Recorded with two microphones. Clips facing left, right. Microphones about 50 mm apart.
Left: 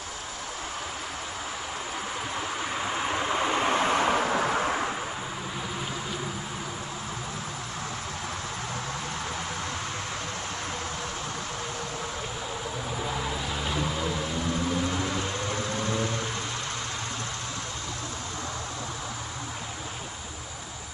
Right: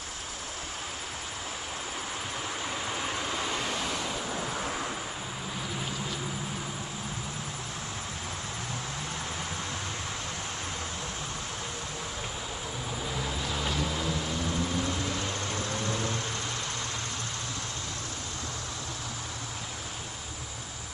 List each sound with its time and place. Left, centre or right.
2.6 s vehicle: left
13.1 s vehicle: centre
14.9 s music: left